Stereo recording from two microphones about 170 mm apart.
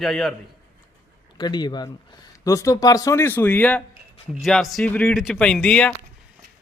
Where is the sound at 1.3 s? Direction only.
25° left (ahead or behind); by 5.9 s 5° left (ahead or behind).